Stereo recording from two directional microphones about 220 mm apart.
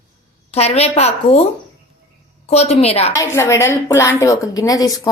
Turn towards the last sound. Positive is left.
turn(degrees=15)  # may be behind; listen again after turning